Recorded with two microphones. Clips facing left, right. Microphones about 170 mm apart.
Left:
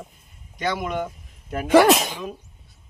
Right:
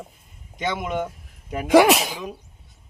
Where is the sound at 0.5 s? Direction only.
20° right (ahead or behind).